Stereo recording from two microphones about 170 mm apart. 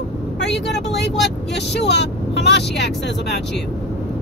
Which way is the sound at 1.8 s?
90° left.